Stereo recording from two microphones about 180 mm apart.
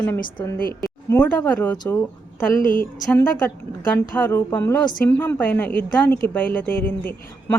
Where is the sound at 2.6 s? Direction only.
50° left (ahead or behind).